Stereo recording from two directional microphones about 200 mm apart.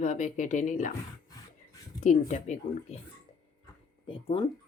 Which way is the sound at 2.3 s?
35° left (ahead or behind).